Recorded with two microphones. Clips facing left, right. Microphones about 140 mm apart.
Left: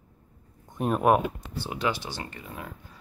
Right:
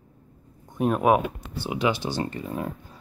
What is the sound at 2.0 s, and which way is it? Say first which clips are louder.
Speech: right 9 dB; 35° right (ahead or behind).